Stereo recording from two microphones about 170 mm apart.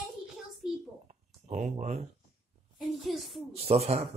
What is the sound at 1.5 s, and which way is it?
Speech, 45° right (ahead or behind).